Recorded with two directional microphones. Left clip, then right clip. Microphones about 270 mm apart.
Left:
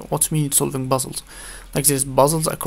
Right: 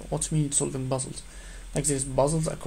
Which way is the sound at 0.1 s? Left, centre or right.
Left.